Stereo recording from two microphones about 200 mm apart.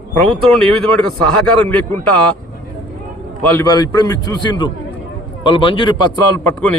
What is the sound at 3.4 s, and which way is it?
A man's voice, 10° left (ahead or behind).